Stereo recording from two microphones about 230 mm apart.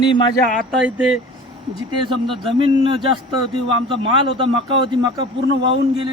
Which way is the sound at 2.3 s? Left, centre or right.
Right.